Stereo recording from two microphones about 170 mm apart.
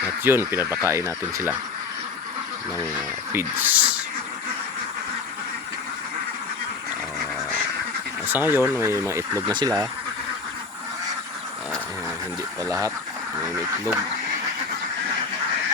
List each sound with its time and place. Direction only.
0.0 s speech: 15° right (ahead or behind)
3.3 s speech: 10° right (ahead or behind)
8.3 s speech: 10° right (ahead or behind)
12.6 s speech: 20° right (ahead or behind)